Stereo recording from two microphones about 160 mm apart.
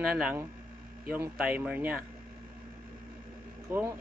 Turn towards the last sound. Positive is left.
turn(degrees=-15)  # may be behind; listen again after turning